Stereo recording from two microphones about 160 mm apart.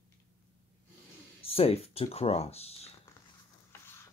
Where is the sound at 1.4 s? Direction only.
40° left (ahead or behind).